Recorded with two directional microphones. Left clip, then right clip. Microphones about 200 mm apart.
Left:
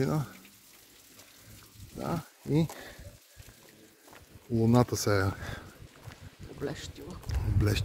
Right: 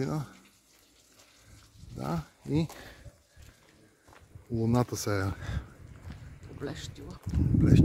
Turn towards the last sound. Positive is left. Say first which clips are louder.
# right 6 dB
turn(degrees=5)  # may be behind; listen again after turning